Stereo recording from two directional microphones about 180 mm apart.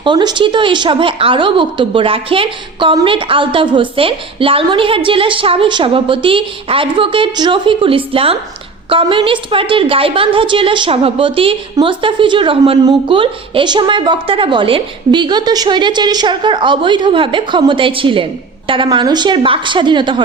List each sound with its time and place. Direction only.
0.0 s a woman's voice: 25° right (ahead or behind)